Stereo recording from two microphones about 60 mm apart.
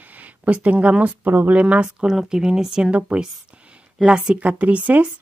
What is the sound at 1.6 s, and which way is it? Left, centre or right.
Speech, centre.